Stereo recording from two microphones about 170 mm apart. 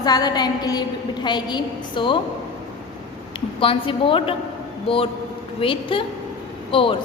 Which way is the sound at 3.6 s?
30° left (ahead or behind).